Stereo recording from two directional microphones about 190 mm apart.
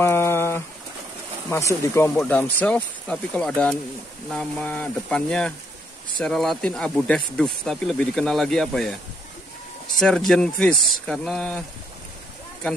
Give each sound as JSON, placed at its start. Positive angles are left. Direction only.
{"t": 0.0, "sound": "a sound", "side_deg": 10}
{"t": 1.5, "sound": "speech", "side_deg": 15}
{"t": 9.9, "sound": "speech", "side_deg": 5}